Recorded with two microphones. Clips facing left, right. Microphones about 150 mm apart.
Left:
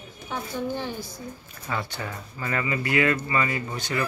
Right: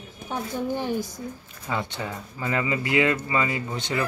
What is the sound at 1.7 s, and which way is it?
Speech, 20° right (ahead or behind).